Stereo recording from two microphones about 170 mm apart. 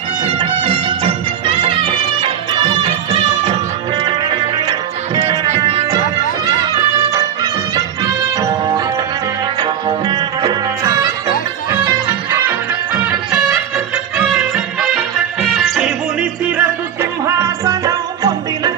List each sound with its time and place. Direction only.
0.3 s music: 30° right (ahead or behind)
5.5 s music: 35° right (ahead or behind)
8.0 s music: 20° right (ahead or behind); by 15.9 s 5° right (ahead or behind)
16.6 s music: 15° right (ahead or behind)